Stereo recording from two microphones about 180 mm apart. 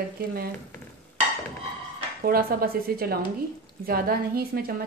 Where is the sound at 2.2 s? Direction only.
55° right (ahead or behind).